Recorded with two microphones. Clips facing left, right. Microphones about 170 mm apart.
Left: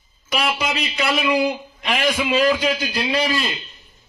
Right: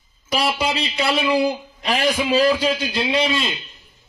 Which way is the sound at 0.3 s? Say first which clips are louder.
Right 2 dB; 35° right (ahead or behind).